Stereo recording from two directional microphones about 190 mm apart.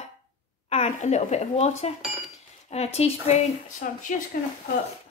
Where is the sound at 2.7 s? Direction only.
35° left (ahead or behind).